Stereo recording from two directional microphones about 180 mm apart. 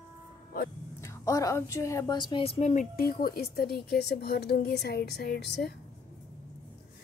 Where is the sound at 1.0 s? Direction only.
15° left (ahead or behind); by 5.7 s 65° left (ahead or behind).